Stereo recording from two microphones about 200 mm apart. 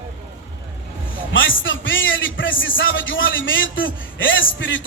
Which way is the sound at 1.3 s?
70° left (ahead or behind).